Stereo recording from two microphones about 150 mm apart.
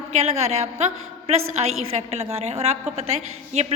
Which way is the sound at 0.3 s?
45° right (ahead or behind).